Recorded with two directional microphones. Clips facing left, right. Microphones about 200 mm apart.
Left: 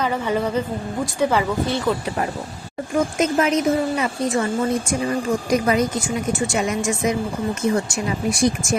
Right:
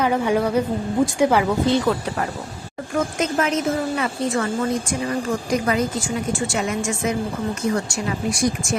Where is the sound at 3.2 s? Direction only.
15° left (ahead or behind).